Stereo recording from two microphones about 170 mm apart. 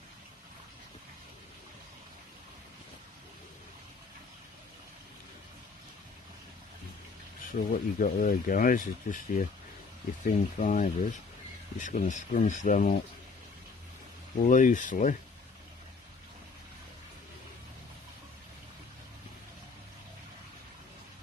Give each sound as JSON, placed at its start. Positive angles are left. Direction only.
{"t": 7.5, "sound": "speech", "side_deg": 55}
{"t": 14.4, "sound": "speech", "side_deg": 50}